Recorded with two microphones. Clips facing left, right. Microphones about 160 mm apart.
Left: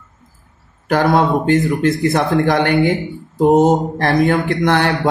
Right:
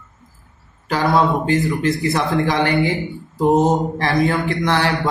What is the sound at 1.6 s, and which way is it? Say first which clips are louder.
Speech: left 3 dB; 45° left (ahead or behind).